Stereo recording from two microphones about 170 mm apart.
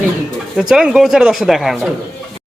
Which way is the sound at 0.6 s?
5° right (ahead or behind).